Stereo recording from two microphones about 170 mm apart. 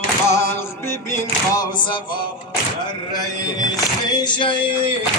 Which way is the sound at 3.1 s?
20° left (ahead or behind).